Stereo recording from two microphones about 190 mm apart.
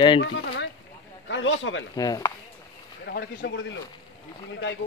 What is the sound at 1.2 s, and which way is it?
Speech, 80° left.